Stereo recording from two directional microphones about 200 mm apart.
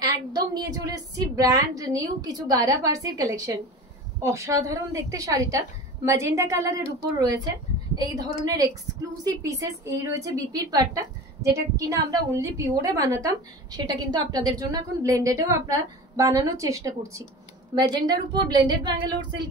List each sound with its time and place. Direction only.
0.0 s a woman's voice: 20° right (ahead or behind)